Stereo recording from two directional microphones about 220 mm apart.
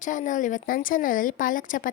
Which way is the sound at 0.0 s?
35° left (ahead or behind).